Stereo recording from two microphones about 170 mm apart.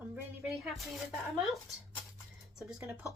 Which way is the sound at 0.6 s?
Centre (ahead or behind).